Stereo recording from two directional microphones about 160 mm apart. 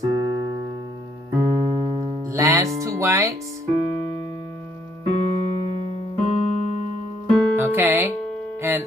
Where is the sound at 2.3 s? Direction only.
20° right (ahead or behind).